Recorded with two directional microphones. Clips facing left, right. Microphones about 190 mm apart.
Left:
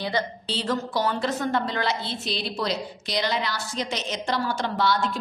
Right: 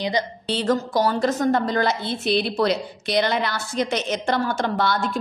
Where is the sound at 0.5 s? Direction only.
50° right (ahead or behind).